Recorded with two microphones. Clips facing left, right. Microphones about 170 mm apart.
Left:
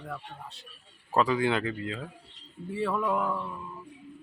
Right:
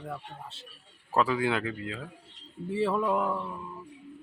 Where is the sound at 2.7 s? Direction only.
25° right (ahead or behind).